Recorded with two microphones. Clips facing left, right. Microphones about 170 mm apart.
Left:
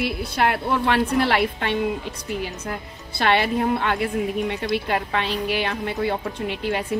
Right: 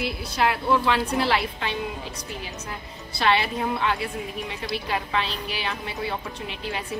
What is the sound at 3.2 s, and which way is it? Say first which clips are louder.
A woman's voice: left 3 dB; 50° left (ahead or behind).